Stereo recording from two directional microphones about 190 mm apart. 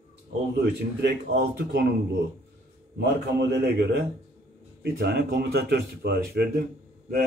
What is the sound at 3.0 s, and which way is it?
Speech, 65° right (ahead or behind).